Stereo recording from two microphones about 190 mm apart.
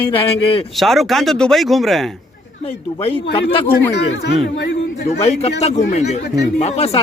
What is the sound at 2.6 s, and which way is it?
Speech, 30° left (ahead or behind).